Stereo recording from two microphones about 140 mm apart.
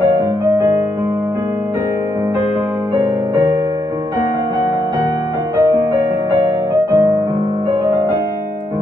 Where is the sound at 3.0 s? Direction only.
15° right (ahead or behind).